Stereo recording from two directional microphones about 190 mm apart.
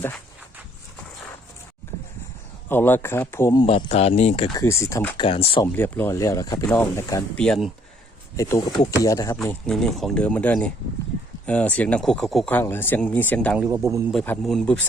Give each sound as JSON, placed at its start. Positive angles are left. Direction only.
{"t": 2.6, "sound": "speech", "side_deg": 10}
{"t": 3.8, "sound": "speech", "side_deg": 35}
{"t": 4.5, "sound": "speech", "side_deg": 15}
{"t": 5.2, "sound": "speech", "side_deg": 30}
{"t": 5.6, "sound": "speech", "side_deg": 10}
{"t": 7.3, "sound": "speech", "side_deg": 5}
{"t": 8.4, "sound": "speech", "side_deg": 15}
{"t": 9.4, "sound": "speech", "side_deg": 0}
{"t": 13.6, "sound": "a man's voice", "side_deg": -15}
{"t": 14.1, "sound": "speech", "side_deg": 0}